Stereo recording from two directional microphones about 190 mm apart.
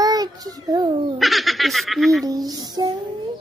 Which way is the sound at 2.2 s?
20° right (ahead or behind).